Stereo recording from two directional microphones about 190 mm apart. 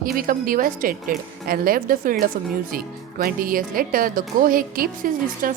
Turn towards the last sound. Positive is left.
turn(degrees=-45)  # may be behind; listen again after turning